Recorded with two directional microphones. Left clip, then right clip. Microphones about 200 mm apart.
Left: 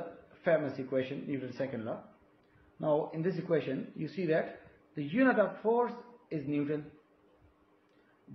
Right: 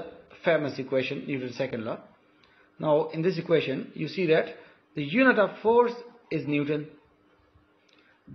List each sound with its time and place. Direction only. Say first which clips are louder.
0.4 s a man's voice: right 5 dB; 40° right (ahead or behind)